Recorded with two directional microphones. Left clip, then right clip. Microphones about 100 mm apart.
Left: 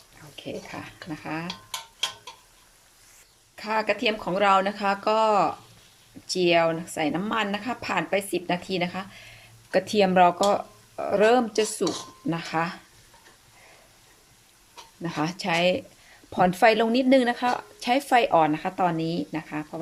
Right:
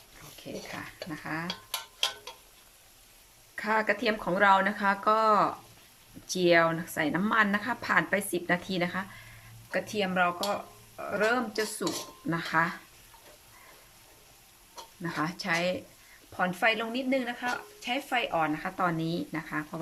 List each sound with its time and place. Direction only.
0.4 s speech: 20° left (ahead or behind)
3.5 s a woman's voice: 10° left (ahead or behind)
9.7 s speech: 35° left (ahead or behind)
12.3 s a woman's voice: 15° left (ahead or behind)
15.0 s speech: 25° left (ahead or behind)
16.4 s speech: 45° left (ahead or behind)
18.5 s a woman's voice: 25° left (ahead or behind)